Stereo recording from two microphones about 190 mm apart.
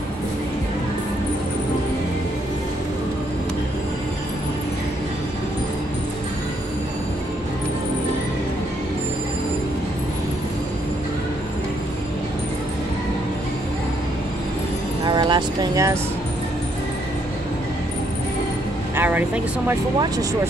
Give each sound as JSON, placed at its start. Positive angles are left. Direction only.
{"t": 15.0, "sound": "vehicle", "side_deg": -25}
{"t": 18.9, "sound": "speech", "side_deg": -10}